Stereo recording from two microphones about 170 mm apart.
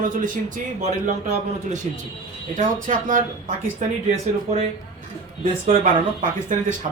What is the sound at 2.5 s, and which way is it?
A man's voice, 50° right (ahead or behind).